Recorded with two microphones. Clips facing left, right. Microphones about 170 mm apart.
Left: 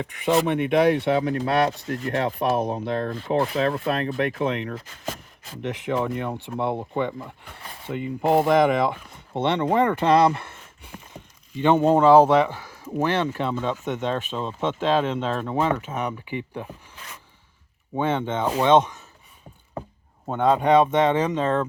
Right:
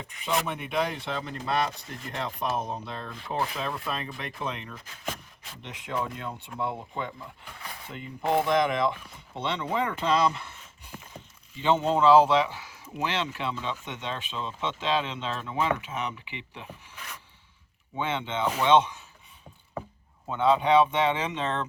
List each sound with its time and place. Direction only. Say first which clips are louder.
0.0 s speech: left 8 dB; 65° left (ahead or behind); by 16.6 s 45° left (ahead or behind)
17.9 s speech: left 6 dB; 50° left (ahead or behind)
20.2 s speech: left 3 dB; 45° left (ahead or behind)